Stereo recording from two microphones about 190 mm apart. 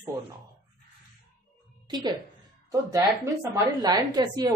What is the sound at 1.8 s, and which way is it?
A woman's voice, 20° right (ahead or behind).